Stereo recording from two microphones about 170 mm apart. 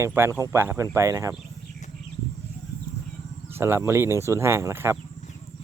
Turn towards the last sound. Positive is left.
turn(degrees=-15)  # may be behind; listen again after turning